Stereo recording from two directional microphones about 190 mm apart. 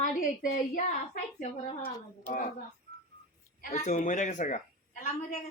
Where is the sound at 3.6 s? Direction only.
40° left (ahead or behind).